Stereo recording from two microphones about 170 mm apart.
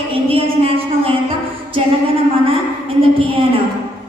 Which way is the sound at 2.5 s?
35° right (ahead or behind).